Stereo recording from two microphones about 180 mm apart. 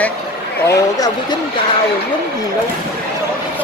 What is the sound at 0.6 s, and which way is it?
Speech, 20° left (ahead or behind).